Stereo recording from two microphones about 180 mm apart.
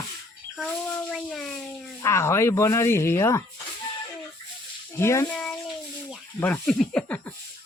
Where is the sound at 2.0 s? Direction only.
15° left (ahead or behind).